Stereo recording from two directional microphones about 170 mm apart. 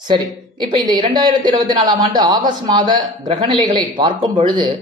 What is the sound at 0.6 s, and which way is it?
A man's voice, 25° right (ahead or behind).